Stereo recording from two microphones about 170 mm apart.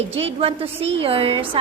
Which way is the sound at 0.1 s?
35° right (ahead or behind).